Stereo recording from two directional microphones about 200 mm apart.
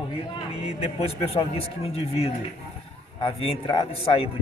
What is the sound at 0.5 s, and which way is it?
Speech, 30° left (ahead or behind).